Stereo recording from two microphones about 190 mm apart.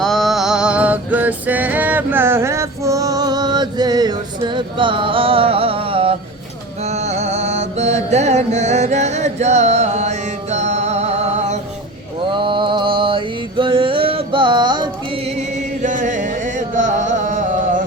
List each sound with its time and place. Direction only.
0.0 s music: centre (ahead or behind); by 11.6 s 35° right (ahead or behind)
12.3 s mantra: 25° right (ahead or behind)
15.8 s music: 40° right (ahead or behind)